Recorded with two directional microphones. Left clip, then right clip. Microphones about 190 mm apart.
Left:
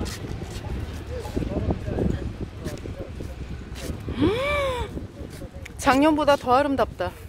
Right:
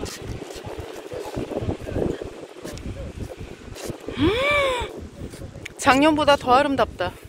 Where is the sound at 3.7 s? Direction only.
10° right (ahead or behind).